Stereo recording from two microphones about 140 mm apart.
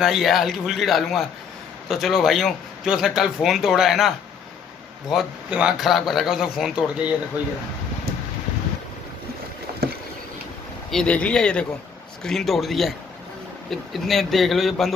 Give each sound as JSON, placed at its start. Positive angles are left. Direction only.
{"t": 0.0, "sound": "a man's voice", "side_deg": 0}
{"t": 5.1, "sound": "a man's voice", "side_deg": -5}
{"t": 9.7, "sound": "vehicle", "side_deg": -90}
{"t": 10.9, "sound": "a man's voice", "side_deg": 5}